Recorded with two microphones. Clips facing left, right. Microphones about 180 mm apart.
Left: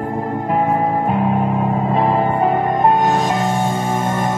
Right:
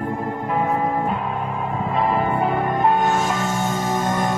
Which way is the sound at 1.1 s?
40° left (ahead or behind).